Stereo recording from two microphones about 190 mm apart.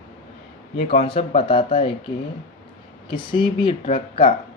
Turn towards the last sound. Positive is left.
turn(degrees=30)  # may be behind; listen again after turning